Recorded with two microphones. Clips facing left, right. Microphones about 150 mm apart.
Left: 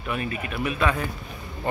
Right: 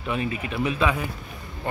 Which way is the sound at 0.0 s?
20° right (ahead or behind).